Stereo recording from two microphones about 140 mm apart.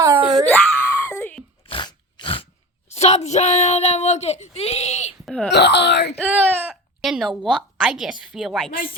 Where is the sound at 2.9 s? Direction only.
50° left (ahead or behind).